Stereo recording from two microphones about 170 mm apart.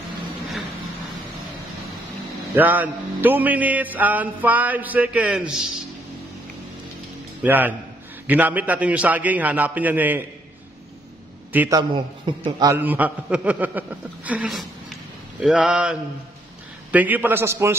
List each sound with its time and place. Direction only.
2.5 s music: 10° right (ahead or behind)
7.4 s music: 10° right (ahead or behind)
11.5 s a man's voice: 10° right (ahead or behind)
12.4 s a man's voice: 25° right (ahead or behind)
12.7 s music: 10° right (ahead or behind)
15.4 s mantra: 5° right (ahead or behind)
16.9 s music: 10° right (ahead or behind)